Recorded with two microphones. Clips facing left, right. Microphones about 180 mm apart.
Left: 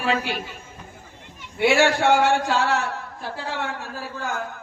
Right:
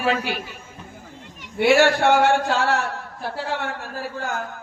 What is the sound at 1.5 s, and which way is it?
A man's voice, 50° right (ahead or behind).